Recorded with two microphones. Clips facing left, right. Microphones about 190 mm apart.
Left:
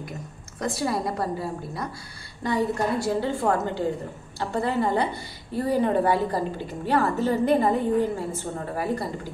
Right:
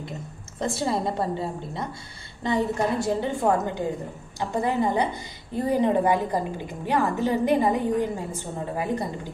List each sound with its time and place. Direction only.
0.6 s a woman's voice: 25° right (ahead or behind)